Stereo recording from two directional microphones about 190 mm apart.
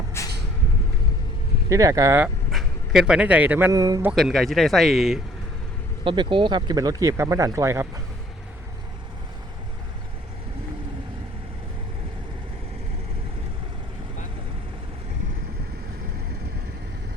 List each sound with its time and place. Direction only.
0.2 s vehicle: 15° left (ahead or behind)
1.7 s speech: 15° right (ahead or behind)
2.5 s speech: centre (ahead or behind); by 4.1 s 20° right (ahead or behind)
4.1 s speech: centre (ahead or behind)
6.1 s speech: 25° right (ahead or behind)